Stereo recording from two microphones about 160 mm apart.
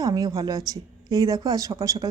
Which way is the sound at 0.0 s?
20° right (ahead or behind).